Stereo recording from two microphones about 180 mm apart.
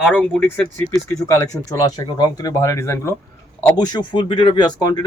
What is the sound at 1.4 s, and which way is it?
Speech, 20° left (ahead or behind).